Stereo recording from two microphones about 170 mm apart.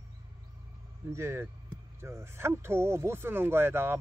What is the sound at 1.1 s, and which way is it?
Speech, 15° right (ahead or behind).